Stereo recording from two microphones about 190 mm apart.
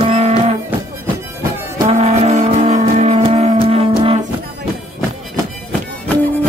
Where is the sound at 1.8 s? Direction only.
35° right (ahead or behind).